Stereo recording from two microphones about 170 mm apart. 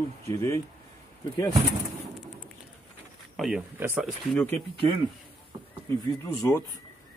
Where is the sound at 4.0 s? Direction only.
Centre (ahead or behind).